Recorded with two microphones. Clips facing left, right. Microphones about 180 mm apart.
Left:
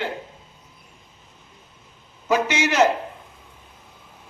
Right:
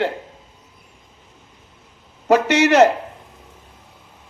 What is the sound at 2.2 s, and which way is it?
Speech, 70° right (ahead or behind).